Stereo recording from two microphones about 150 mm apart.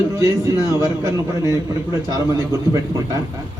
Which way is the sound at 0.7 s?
20° right (ahead or behind).